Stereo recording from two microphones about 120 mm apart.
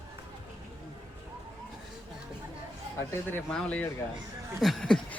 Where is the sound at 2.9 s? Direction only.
20° left (ahead or behind).